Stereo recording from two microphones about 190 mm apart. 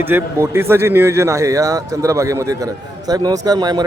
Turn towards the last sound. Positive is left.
turn(degrees=-20)  # may be behind; listen again after turning